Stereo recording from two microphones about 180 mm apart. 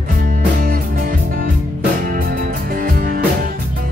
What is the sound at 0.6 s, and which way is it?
Music, 50° right (ahead or behind).